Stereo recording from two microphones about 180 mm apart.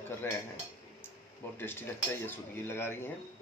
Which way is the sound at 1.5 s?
10° left (ahead or behind).